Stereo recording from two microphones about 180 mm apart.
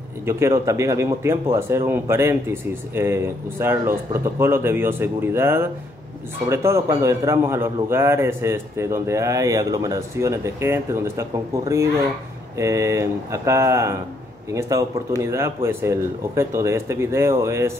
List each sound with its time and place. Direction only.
0.2 s speech: 15° right (ahead or behind)